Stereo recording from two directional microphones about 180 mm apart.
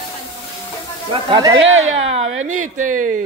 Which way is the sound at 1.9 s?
35° right (ahead or behind).